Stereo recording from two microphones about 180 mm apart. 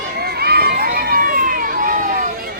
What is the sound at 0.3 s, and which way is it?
Run, 60° right (ahead or behind).